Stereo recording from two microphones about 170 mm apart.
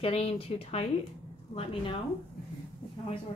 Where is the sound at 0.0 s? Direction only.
35° left (ahead or behind).